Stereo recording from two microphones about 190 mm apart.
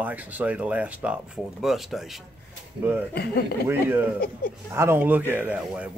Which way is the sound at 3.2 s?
55° left (ahead or behind).